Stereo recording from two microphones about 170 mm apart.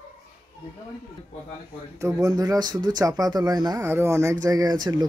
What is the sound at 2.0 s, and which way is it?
Speech, 20° right (ahead or behind).